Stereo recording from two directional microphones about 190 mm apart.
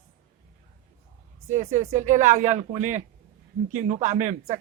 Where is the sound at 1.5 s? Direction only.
40° right (ahead or behind).